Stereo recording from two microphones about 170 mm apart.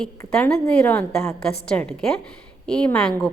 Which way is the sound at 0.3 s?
5° left (ahead or behind).